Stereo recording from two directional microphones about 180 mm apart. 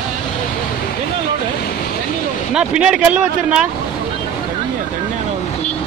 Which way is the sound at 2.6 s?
5° right (ahead or behind).